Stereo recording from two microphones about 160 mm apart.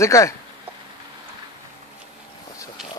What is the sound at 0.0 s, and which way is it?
Speech, 20° left (ahead or behind).